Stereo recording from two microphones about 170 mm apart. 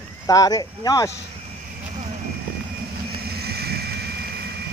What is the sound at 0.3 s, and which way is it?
Speech, 20° left (ahead or behind).